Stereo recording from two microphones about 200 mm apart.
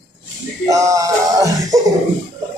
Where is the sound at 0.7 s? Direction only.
15° right (ahead or behind).